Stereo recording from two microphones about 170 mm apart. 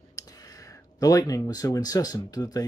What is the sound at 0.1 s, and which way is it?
Speech, 20° left (ahead or behind).